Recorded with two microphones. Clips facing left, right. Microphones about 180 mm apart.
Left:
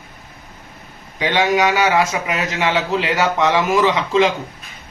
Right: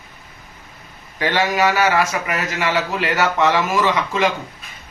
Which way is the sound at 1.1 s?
15° left (ahead or behind).